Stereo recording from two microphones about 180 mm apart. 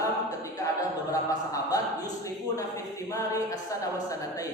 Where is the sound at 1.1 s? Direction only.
20° left (ahead or behind).